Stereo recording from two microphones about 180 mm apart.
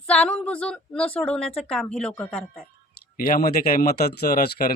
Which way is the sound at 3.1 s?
55° left (ahead or behind).